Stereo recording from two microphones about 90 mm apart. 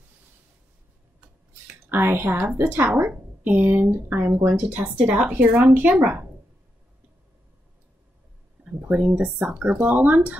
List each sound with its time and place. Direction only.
1.9 s a woman's voice: 25° right (ahead or behind)
8.9 s a woman's voice: 5° right (ahead or behind)
9.2 s a woman's voice: 15° right (ahead or behind)